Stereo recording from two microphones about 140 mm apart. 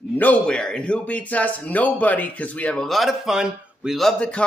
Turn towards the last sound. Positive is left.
turn(degrees=10)  # may be behind; listen again after turning